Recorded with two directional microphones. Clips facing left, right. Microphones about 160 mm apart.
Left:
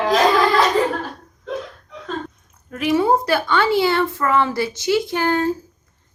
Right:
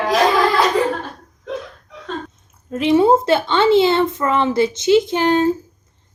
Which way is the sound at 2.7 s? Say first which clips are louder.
Right 4 dB; 25° right (ahead or behind).